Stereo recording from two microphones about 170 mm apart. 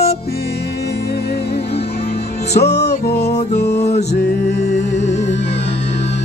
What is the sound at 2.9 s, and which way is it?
Music, 40° left (ahead or behind).